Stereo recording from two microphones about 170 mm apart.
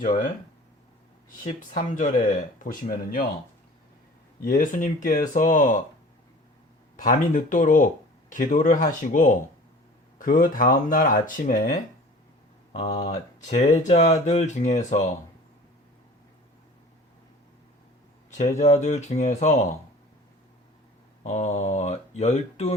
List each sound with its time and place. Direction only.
1.5 s speech: 50° left (ahead or behind)
4.4 s speech: 55° left (ahead or behind)
6.9 s speech: 50° left (ahead or behind)
12.7 s speech: 40° left (ahead or behind)
18.3 s speech: 45° left (ahead or behind)
21.2 s speech: 40° left (ahead or behind)